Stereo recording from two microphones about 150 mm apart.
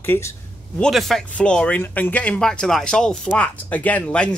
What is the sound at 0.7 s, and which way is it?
Speech, centre (ahead or behind).